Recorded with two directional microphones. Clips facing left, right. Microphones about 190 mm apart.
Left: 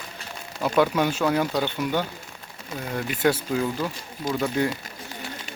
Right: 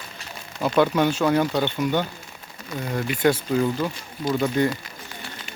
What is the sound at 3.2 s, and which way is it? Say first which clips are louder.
Speech: right 2 dB; 10° left (ahead or behind).